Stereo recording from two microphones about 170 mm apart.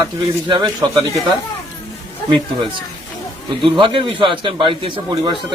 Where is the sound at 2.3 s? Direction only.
25° right (ahead or behind).